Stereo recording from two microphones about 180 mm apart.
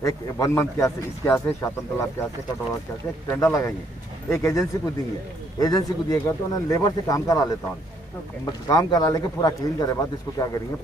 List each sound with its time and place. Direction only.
0.0 s a man's voice: 15° left (ahead or behind)
3.3 s a man's voice: 15° left (ahead or behind)